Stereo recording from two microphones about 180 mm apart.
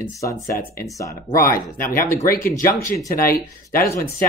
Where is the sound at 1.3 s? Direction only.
55° left (ahead or behind).